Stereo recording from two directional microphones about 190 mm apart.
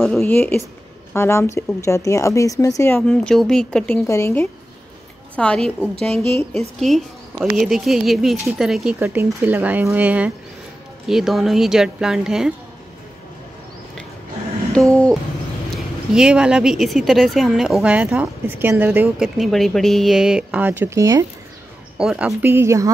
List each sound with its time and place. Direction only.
0.2 s speech: 10° left (ahead or behind)
3.0 s speech: 5° left (ahead or behind)
14.7 s speech: 5° left (ahead or behind); by 21.3 s 15° right (ahead or behind)
21.9 s speech: 5° right (ahead or behind)